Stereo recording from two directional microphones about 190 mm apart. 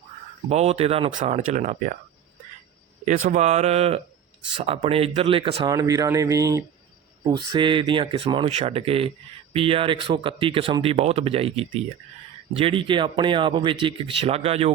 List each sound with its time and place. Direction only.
0.4 s speech: 35° right (ahead or behind)
3.0 s speech: 40° right (ahead or behind)
5.6 s speech: 20° right (ahead or behind)